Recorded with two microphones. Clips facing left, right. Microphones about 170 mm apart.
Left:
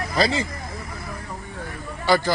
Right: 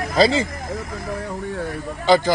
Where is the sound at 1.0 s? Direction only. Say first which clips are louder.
Right 8 dB; 80° right.